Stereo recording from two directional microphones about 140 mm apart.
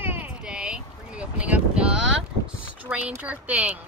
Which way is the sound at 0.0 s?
15° right (ahead or behind).